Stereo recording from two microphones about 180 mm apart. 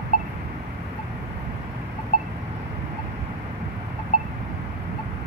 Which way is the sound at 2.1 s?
50° left (ahead or behind).